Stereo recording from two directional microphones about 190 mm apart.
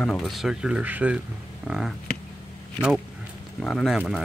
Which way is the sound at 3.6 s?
Centre (ahead or behind).